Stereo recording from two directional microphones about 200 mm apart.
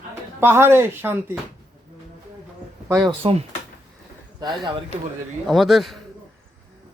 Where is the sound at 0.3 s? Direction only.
10° right (ahead or behind).